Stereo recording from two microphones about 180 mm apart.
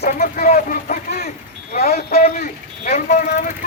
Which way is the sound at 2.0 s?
60° left (ahead or behind).